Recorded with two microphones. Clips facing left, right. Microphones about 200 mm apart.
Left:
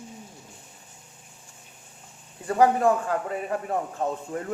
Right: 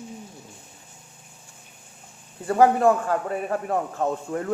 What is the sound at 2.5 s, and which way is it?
A man's voice, 35° right (ahead or behind).